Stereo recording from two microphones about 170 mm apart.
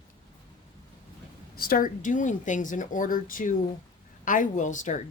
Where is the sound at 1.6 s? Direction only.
60° left (ahead or behind).